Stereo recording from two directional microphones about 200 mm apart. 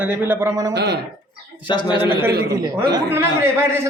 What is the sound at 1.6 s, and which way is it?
Speech, 20° left (ahead or behind).